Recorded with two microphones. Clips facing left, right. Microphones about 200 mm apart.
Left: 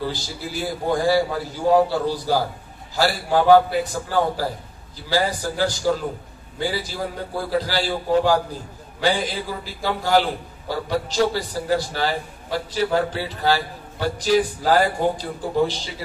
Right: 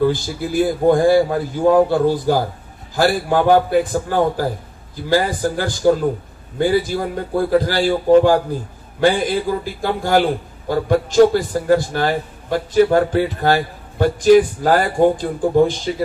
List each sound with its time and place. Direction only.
0.0 s a man's voice: 50° right (ahead or behind)